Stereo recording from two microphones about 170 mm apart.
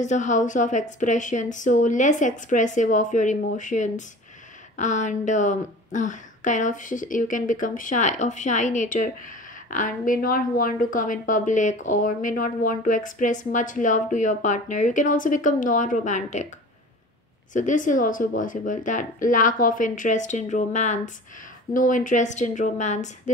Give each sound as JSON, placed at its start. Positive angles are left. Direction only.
{"t": 0.0, "sound": "speech", "side_deg": 45}
{"t": 17.5, "sound": "speech", "side_deg": 50}